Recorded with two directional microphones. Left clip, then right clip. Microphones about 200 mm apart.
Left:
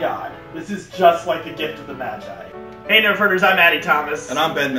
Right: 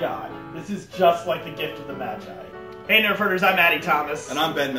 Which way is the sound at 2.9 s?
10° right (ahead or behind).